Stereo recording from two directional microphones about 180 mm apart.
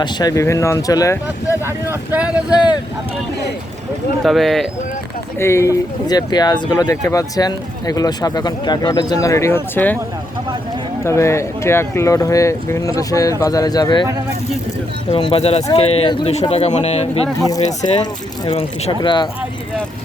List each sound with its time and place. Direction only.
0.0 s speech: 20° left (ahead or behind)
1.6 s speech: 15° right (ahead or behind)
4.2 s speech: centre (ahead or behind)
5.4 s speech: 15° left (ahead or behind)
11.0 s speech: 15° left (ahead or behind)
15.1 s speech: 30° left (ahead or behind)
17.4 s speech: 20° left (ahead or behind)